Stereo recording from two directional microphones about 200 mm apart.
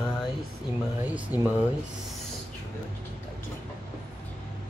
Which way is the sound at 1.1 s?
5° right (ahead or behind).